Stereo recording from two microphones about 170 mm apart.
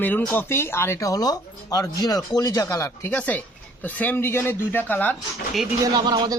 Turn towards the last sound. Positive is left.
turn(degrees=-25)  # may be behind; listen again after turning